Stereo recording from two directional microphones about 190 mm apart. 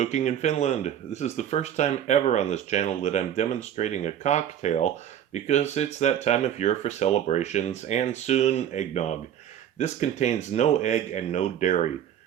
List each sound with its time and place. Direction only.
0.0 s speech: 35° left (ahead or behind)